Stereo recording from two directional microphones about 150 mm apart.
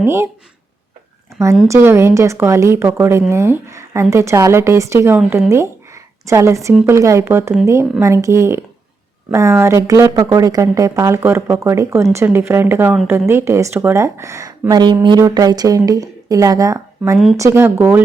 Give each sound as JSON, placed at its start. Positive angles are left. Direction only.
{"t": 0.0, "sound": "speech", "side_deg": -15}
{"t": 1.6, "sound": "speech", "side_deg": -15}